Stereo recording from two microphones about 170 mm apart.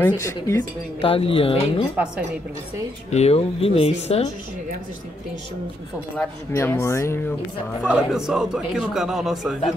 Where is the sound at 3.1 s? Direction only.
40° left (ahead or behind).